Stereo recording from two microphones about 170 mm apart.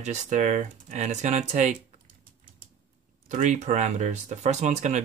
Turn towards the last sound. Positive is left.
turn(degrees=-45)  # may be behind; listen again after turning